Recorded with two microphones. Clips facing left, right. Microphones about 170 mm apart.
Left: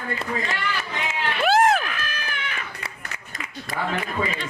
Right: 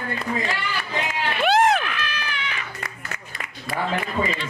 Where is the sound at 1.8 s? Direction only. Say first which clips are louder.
Right 2 dB; 45° left (ahead or behind).